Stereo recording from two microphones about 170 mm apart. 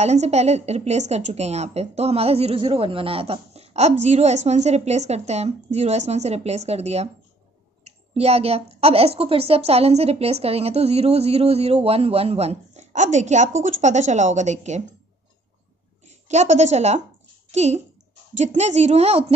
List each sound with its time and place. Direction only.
0.0 s a woman's voice: 40° right (ahead or behind)
16.1 s a woman's voice: 45° right (ahead or behind)